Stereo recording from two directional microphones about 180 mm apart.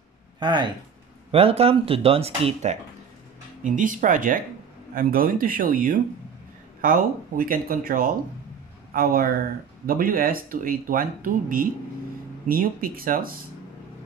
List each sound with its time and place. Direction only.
0.4 s speech: 25° right (ahead or behind); by 13.4 s 55° right (ahead or behind)